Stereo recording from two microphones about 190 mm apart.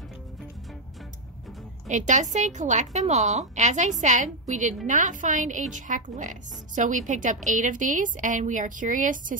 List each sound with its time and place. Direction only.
1.9 s a woman's voice: 40° right (ahead or behind)